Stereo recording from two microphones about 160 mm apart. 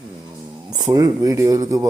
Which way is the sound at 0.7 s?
25° right (ahead or behind).